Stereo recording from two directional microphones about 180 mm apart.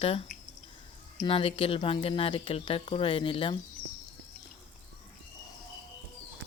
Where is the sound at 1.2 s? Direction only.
30° left (ahead or behind).